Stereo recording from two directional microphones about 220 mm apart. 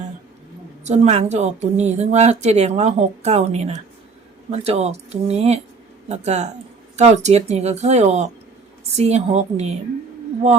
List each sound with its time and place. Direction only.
0.9 s a woman's voice: 30° right (ahead or behind)